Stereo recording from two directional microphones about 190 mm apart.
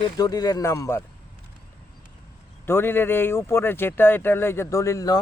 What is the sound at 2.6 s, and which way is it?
Speech, 10° left (ahead or behind).